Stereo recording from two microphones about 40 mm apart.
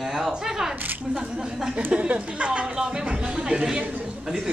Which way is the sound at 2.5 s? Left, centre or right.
Right.